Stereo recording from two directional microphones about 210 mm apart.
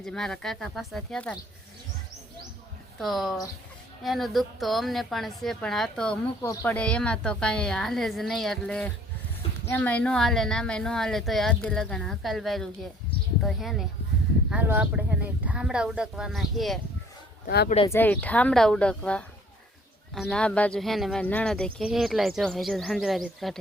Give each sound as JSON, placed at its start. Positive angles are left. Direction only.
{"t": 0.0, "sound": "speech", "side_deg": 0}
{"t": 3.0, "sound": "speech", "side_deg": 0}
{"t": 17.4, "sound": "speech", "side_deg": 50}
{"t": 17.8, "sound": "speech", "side_deg": 10}